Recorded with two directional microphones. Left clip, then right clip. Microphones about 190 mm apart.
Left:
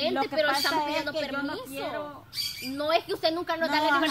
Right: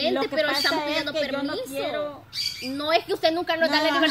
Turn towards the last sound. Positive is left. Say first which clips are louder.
# right 3 dB
turn(degrees=50)  # may be behind; listen again after turning